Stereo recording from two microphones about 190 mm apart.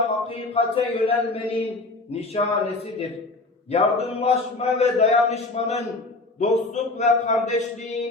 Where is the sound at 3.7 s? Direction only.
35° left (ahead or behind).